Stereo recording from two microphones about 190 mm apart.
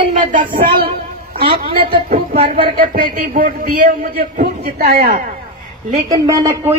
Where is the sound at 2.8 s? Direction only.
45° right (ahead or behind).